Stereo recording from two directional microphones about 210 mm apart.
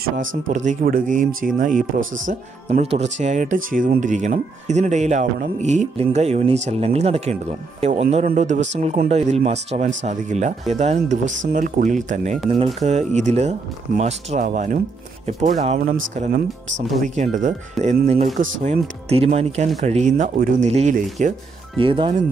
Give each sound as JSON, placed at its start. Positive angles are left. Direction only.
{"t": 0.5, "sound": "speech", "side_deg": -35}
{"t": 17.1, "sound": "speech", "side_deg": -35}